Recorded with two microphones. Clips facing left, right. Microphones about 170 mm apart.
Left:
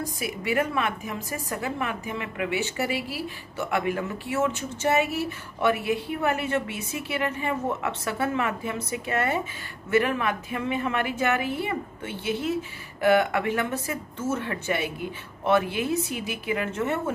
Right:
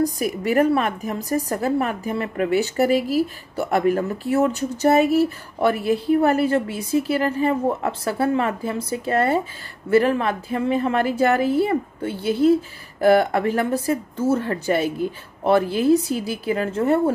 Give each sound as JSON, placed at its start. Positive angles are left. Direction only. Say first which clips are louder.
{"t": 0.0, "sound": "a woman's voice", "louder": "right 9 dB", "side_deg": -40}